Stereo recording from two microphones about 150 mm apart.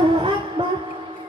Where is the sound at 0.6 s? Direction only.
35° right (ahead or behind).